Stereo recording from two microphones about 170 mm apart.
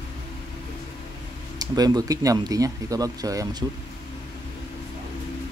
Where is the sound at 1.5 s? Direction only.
25° right (ahead or behind).